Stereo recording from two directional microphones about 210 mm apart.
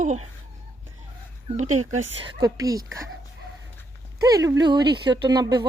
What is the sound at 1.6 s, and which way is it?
Speech, 90° right.